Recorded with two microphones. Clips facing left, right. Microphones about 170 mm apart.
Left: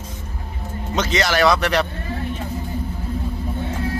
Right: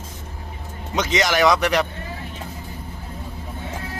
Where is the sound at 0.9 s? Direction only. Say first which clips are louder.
Even; 15° right (ahead or behind).